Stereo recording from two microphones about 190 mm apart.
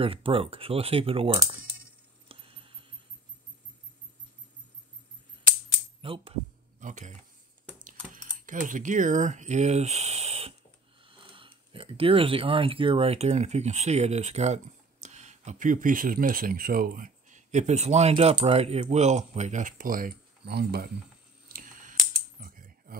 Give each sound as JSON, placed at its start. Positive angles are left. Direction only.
{"t": 0.0, "sound": "speech", "side_deg": -30}
{"t": 2.2, "sound": "a sound", "side_deg": -30}
{"t": 5.9, "sound": "speech", "side_deg": -30}
{"t": 6.8, "sound": "speech", "side_deg": -40}
{"t": 21.5, "sound": "scissors", "side_deg": -45}
{"t": 22.4, "sound": "computer keyboard", "side_deg": -45}